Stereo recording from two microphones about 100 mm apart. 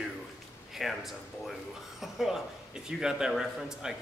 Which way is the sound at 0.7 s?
Centre (ahead or behind).